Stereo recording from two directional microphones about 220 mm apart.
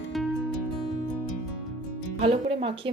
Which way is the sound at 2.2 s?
25° right (ahead or behind).